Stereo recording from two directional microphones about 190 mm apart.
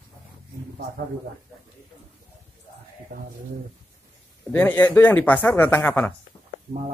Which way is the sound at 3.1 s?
45° right (ahead or behind).